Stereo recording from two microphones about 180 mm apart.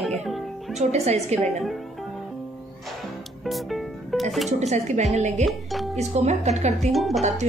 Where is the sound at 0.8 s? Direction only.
35° right (ahead or behind).